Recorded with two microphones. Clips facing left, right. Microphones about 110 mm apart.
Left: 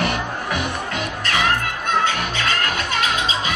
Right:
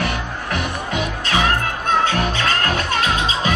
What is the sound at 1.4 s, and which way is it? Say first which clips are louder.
Music: right 2 dB; 40° right (ahead or behind).